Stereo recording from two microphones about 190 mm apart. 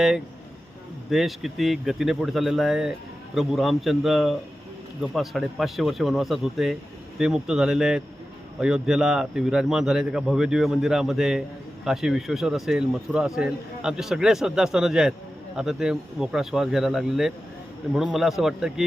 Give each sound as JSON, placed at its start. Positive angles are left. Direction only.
{"t": 1.1, "sound": "a man's voice", "side_deg": 0}